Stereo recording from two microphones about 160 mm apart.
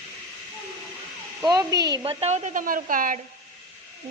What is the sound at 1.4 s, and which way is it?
Speech, 25° right (ahead or behind).